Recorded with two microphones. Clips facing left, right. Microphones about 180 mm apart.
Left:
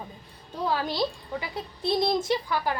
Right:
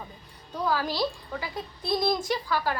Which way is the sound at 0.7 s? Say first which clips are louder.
Even; 25° left (ahead or behind).